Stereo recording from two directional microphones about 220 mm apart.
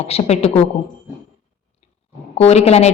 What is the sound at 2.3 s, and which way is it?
Speech, 30° left (ahead or behind).